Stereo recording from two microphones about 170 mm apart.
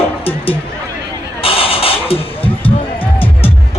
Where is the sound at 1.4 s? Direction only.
35° left (ahead or behind).